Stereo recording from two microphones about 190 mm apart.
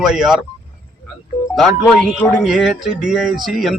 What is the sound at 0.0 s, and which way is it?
Speech, centre (ahead or behind).